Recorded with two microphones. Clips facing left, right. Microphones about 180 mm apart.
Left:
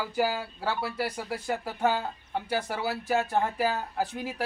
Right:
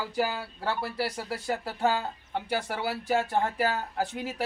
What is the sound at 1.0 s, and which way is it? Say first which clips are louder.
Speech: even; 5° right (ahead or behind).